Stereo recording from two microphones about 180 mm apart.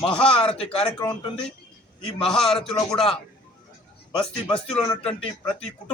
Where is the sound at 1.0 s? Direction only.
25° left (ahead or behind).